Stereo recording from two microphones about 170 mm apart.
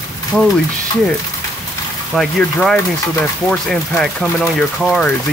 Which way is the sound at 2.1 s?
Centre (ahead or behind).